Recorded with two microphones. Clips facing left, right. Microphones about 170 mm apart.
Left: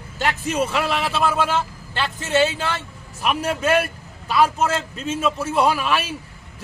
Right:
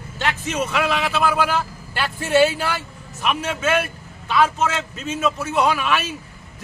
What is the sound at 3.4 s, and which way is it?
Speech, 35° left (ahead or behind).